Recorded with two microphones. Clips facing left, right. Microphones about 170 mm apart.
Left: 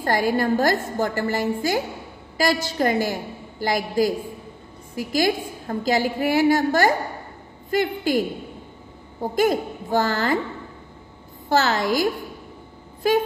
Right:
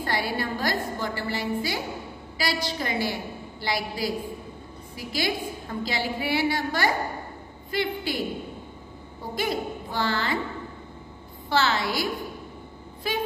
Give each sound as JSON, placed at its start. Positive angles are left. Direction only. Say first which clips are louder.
{"t": 0.0, "sound": "a woman's voice", "louder": "left 7 dB", "side_deg": 45}
{"t": 9.2, "sound": "a woman's voice", "louder": "left 8 dB", "side_deg": 45}
{"t": 11.4, "sound": "a woman's voice", "louder": "left 4 dB", "side_deg": 45}